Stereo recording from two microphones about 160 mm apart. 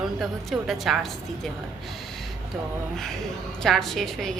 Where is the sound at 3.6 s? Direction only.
Centre (ahead or behind).